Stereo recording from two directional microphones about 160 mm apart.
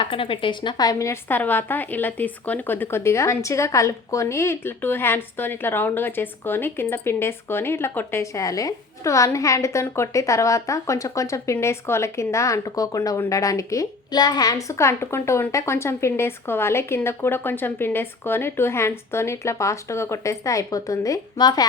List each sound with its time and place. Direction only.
0.0 s speech: 35° left (ahead or behind)